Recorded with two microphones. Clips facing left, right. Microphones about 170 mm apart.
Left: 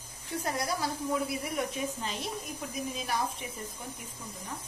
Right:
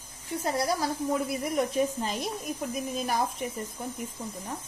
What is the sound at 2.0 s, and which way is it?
Speech, 45° right (ahead or behind).